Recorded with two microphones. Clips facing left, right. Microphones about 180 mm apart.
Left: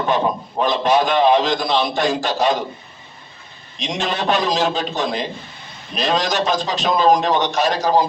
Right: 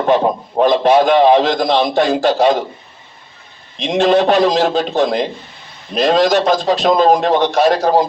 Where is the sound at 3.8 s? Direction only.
60° right (ahead or behind).